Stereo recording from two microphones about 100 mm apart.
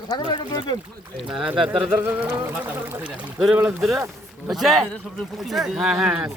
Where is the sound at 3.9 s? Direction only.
25° right (ahead or behind).